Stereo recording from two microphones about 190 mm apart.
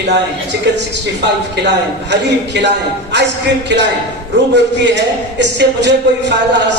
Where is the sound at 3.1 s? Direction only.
65° right (ahead or behind).